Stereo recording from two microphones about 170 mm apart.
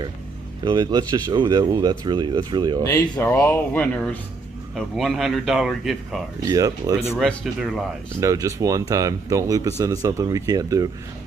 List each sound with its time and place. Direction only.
0.7 s speech: 25° right (ahead or behind)
2.8 s speech: 15° left (ahead or behind); by 6.2 s centre (ahead or behind)
6.4 s speech: 20° right (ahead or behind)
7.2 s speech: centre (ahead or behind)
8.2 s speech: 20° right (ahead or behind)